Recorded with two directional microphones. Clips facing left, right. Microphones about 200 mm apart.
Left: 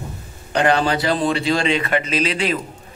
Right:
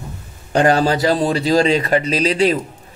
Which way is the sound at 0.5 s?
40° right (ahead or behind).